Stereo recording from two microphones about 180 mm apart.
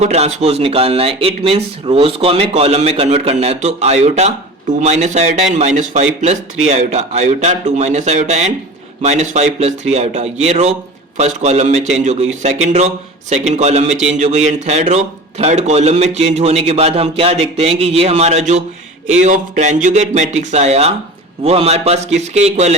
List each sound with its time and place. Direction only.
0.0 s speech: 35° right (ahead or behind)